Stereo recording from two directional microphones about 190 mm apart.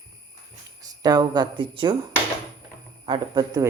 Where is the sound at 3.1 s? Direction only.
20° right (ahead or behind).